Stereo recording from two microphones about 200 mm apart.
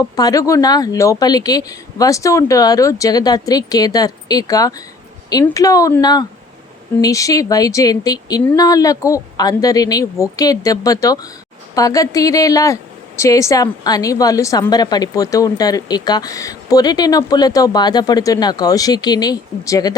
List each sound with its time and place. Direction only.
0.0 s speech: 15° left (ahead or behind)